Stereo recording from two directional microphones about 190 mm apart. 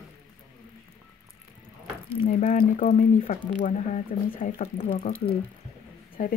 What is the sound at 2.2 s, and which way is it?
Speech, 45° left (ahead or behind).